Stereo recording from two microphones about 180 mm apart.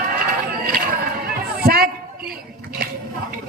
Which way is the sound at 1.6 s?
55° right (ahead or behind).